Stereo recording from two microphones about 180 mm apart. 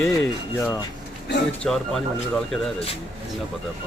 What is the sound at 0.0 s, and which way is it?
Speech, centre (ahead or behind).